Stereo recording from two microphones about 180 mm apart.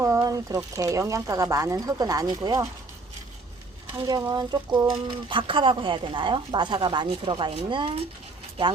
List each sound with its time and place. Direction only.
0.0 s speech: 15° right (ahead or behind)
4.0 s speech: 20° right (ahead or behind)